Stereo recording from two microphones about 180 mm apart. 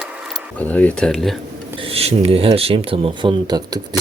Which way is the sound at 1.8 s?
35° right (ahead or behind).